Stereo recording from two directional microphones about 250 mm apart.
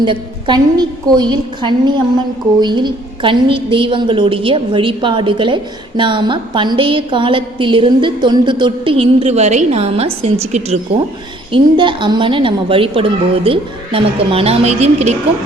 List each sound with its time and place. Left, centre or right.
0.0 s a woman's voice: centre